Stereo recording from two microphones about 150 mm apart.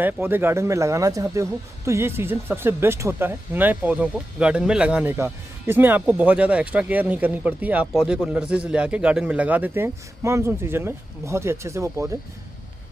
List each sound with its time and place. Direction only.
0.0 s speech: 15° right (ahead or behind)